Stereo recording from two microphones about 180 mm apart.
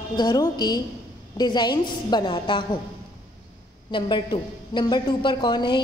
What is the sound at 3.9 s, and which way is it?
A woman's voice, 25° left (ahead or behind).